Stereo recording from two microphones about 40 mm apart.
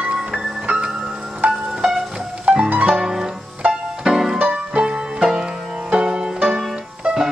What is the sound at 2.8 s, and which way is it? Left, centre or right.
Music, centre.